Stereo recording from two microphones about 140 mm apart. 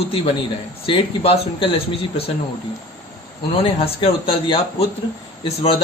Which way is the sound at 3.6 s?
40° left (ahead or behind).